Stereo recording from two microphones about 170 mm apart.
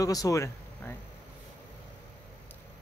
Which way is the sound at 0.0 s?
20° left (ahead or behind).